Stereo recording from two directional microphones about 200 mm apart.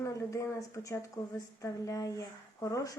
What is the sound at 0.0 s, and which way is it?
Speech, 15° left (ahead or behind).